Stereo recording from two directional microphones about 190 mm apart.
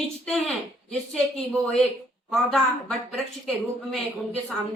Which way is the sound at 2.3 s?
5° left (ahead or behind).